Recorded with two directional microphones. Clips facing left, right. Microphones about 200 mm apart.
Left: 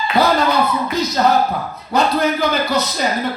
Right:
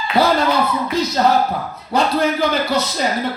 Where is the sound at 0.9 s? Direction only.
30° right (ahead or behind).